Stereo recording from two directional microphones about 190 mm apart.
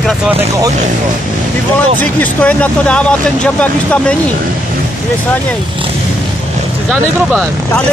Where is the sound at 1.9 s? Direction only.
10° left (ahead or behind).